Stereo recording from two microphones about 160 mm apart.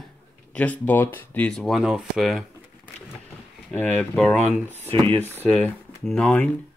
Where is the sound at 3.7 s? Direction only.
10° left (ahead or behind).